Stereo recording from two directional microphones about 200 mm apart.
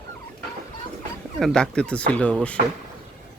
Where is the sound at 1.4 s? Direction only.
5° left (ahead or behind).